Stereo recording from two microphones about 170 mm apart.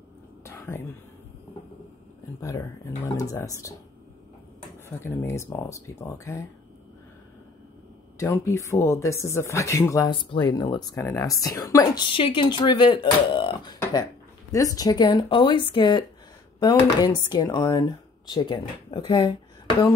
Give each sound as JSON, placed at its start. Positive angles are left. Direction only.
{"t": 0.5, "sound": "whispering", "side_deg": 15}
{"t": 3.2, "sound": "speech", "side_deg": 20}
{"t": 4.8, "sound": "speech", "side_deg": 15}
{"t": 8.2, "sound": "speech", "side_deg": 15}